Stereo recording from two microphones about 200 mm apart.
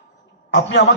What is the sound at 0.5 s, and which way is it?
Speech, 60° left (ahead or behind).